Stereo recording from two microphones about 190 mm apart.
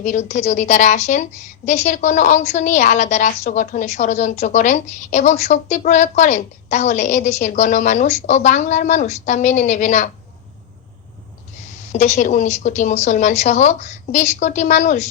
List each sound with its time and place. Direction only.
0.0 s a woman's voice: 40° left (ahead or behind)
11.9 s a woman's voice: 35° left (ahead or behind)